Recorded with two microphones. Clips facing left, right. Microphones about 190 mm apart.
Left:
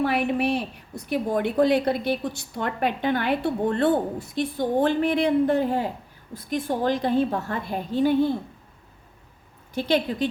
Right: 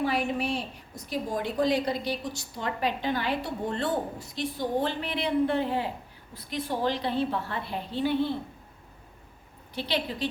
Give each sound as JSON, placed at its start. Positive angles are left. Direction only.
{"t": 0.0, "sound": "a woman's voice", "side_deg": 65}
{"t": 9.7, "sound": "a woman's voice", "side_deg": 45}